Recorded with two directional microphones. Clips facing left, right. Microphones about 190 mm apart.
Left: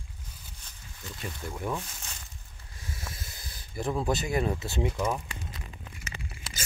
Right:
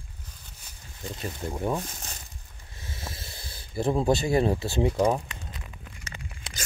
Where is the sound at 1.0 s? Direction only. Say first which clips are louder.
Right 5 dB; 30° right (ahead or behind).